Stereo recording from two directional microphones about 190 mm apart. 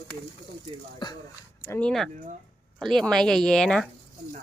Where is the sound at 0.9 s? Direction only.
25° left (ahead or behind).